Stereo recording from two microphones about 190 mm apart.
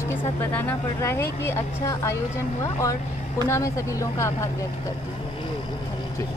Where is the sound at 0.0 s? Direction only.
10° left (ahead or behind).